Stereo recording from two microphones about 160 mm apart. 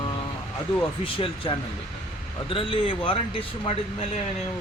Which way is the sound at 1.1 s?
30° left (ahead or behind).